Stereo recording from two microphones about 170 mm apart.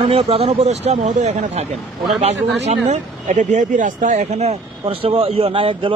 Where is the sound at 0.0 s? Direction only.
35° right (ahead or behind).